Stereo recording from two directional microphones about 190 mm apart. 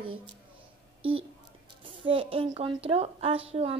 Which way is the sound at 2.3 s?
30° right (ahead or behind).